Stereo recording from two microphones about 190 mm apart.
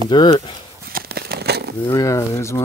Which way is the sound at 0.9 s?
55° right (ahead or behind).